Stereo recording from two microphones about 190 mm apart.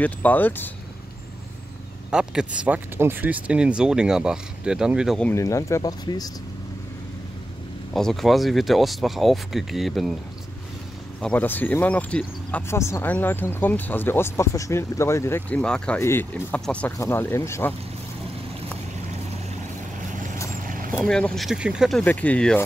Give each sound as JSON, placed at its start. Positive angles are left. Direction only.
{"t": 0.0, "sound": "speech", "side_deg": 10}
{"t": 2.0, "sound": "speech", "side_deg": -5}
{"t": 5.3, "sound": "speech", "side_deg": 15}
{"t": 7.9, "sound": "speech", "side_deg": 0}
{"t": 11.1, "sound": "speech", "side_deg": 10}
{"t": 20.6, "sound": "boat", "side_deg": -45}
{"t": 21.0, "sound": "speech", "side_deg": 5}